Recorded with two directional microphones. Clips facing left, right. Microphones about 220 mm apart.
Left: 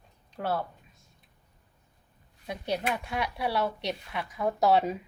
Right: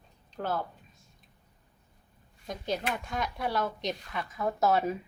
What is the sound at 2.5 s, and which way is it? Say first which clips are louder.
Speech: left 2 dB; 10° left (ahead or behind).